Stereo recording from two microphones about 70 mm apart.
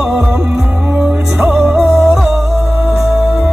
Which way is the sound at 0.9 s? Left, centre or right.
Right.